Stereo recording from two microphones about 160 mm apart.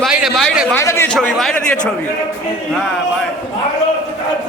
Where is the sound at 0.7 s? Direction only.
15° left (ahead or behind).